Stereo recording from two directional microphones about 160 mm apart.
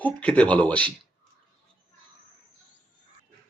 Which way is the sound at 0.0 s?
10° left (ahead or behind).